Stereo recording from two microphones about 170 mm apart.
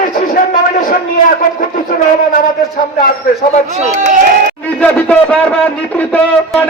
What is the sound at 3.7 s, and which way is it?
Speech, 45° right (ahead or behind).